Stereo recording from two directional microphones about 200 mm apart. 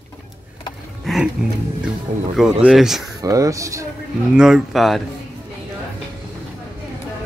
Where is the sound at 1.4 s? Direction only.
5° right (ahead or behind).